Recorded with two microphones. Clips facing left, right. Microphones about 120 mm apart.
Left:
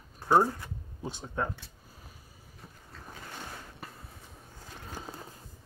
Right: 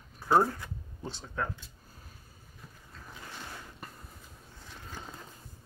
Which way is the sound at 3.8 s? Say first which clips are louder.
Left 2 dB; centre (ahead or behind).